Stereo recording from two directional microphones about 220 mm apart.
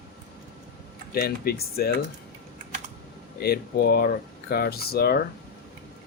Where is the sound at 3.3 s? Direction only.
45° left (ahead or behind).